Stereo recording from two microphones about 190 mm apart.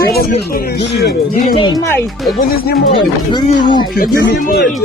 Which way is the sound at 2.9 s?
25° left (ahead or behind).